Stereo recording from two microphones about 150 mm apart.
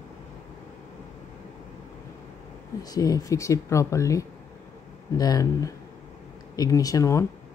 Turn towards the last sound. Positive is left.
turn(degrees=20)  # may be behind; listen again after turning